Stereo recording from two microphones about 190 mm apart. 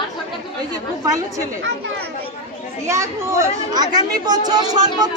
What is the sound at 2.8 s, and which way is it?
Speech, 15° right (ahead or behind).